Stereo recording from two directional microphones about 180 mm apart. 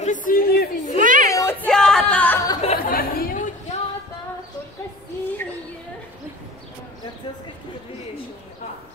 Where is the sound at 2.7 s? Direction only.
55° left (ahead or behind).